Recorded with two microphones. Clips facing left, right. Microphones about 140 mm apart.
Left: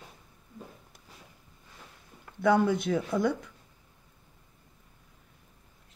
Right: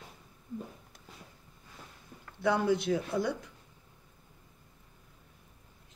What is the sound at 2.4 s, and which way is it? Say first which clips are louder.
Speech: left 4 dB; 55° left (ahead or behind).